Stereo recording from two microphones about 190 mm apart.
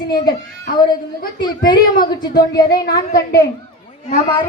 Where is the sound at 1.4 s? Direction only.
20° left (ahead or behind).